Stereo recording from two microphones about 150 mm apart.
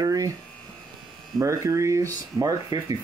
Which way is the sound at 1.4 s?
20° right (ahead or behind).